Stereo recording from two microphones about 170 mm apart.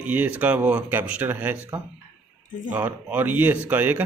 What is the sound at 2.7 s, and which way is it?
Speech, 10° right (ahead or behind).